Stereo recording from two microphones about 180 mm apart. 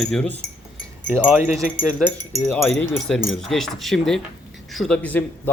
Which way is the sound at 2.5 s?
5° left (ahead or behind).